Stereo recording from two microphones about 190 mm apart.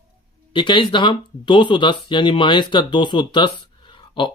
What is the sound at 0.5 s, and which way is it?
Speech, 25° left (ahead or behind).